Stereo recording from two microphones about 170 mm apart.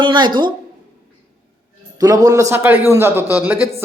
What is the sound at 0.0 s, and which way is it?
Speech, 25° right (ahead or behind).